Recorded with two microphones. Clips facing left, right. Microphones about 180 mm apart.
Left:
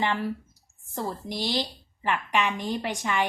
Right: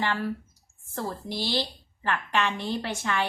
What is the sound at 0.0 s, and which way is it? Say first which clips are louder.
A woman's voice: left 1 dB; 20° left (ahead or behind).